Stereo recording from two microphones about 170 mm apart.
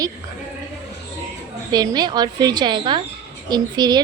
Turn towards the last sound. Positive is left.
turn(degrees=-25)  # may be behind; listen again after turning